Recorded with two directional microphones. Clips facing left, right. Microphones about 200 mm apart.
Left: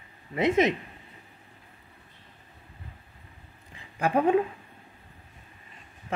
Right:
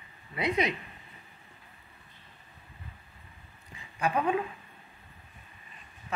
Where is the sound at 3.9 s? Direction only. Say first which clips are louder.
Left 6 dB; 55° left (ahead or behind).